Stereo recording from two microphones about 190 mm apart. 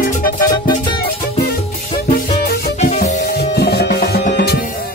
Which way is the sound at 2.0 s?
50° left (ahead or behind).